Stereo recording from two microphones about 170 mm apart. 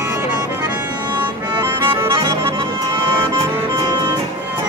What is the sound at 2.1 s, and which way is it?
Accordion, 30° right (ahead or behind).